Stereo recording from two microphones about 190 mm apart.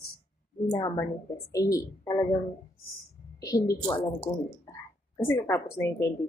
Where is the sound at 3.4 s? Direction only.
20° left (ahead or behind).